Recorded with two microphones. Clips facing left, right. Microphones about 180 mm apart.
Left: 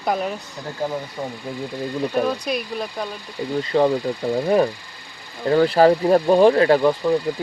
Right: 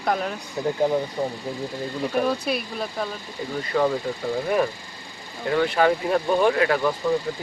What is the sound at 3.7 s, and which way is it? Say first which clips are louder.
Speech: left 4 dB; 30° left (ahead or behind).